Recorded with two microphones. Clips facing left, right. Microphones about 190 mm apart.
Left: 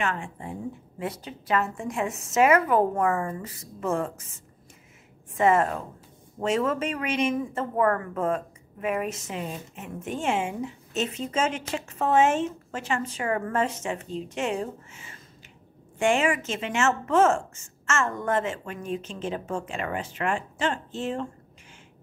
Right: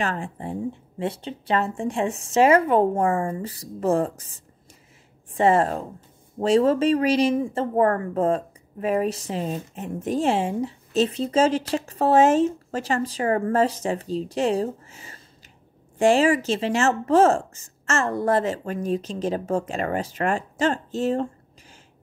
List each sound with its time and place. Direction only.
0.0 s speech: 35° right (ahead or behind)